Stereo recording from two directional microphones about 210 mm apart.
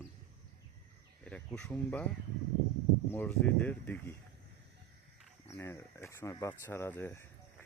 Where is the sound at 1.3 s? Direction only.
5° left (ahead or behind).